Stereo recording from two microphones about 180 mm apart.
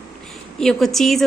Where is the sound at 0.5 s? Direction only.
Centre (ahead or behind).